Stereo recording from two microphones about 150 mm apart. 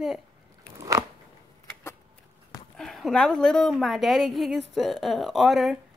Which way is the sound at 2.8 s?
Centre (ahead or behind).